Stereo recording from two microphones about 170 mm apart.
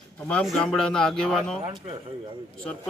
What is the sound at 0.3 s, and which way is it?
Speech, 5° left (ahead or behind).